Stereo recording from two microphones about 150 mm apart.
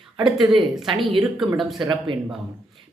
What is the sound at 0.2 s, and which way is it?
Speech, 35° right (ahead or behind).